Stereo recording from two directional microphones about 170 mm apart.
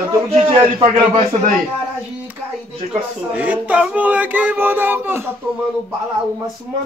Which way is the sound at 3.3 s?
10° right (ahead or behind).